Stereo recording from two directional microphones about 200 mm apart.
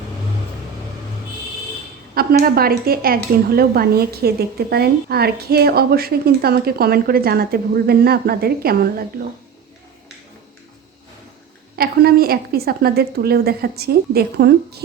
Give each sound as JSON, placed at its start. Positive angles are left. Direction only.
{"t": 2.4, "sound": "a woman's voice", "side_deg": -50}
{"t": 11.8, "sound": "a woman's voice", "side_deg": -50}